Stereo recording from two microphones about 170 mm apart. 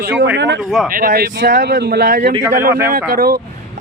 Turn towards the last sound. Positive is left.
turn(degrees=-55)  # may be behind; listen again after turning